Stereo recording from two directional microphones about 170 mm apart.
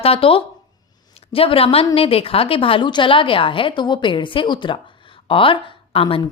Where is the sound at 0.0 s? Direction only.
35° left (ahead or behind).